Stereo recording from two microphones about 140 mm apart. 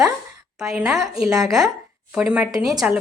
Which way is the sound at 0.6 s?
5° right (ahead or behind).